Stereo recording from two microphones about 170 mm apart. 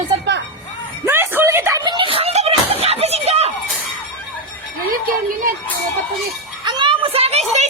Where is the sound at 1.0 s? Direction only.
15° right (ahead or behind); by 3.5 s 40° right (ahead or behind).